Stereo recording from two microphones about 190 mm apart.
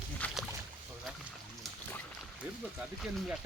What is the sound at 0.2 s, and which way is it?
Rowboat, 10° left (ahead or behind).